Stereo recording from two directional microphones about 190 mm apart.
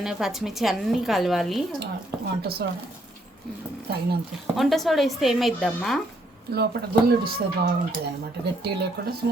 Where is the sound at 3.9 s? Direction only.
55° right (ahead or behind).